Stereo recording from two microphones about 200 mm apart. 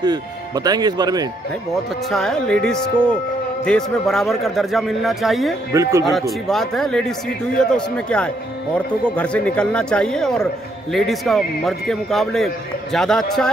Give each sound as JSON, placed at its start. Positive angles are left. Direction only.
{"t": 0.0, "sound": "speech", "side_deg": -20}
{"t": 1.7, "sound": "speech", "side_deg": 0}
{"t": 5.7, "sound": "speech", "side_deg": -15}
{"t": 6.4, "sound": "speech", "side_deg": 0}